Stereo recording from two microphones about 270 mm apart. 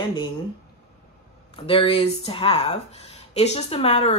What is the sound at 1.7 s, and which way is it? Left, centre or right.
Speech, centre.